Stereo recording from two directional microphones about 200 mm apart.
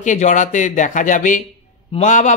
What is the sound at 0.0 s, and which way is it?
A man's voice, 40° left (ahead or behind).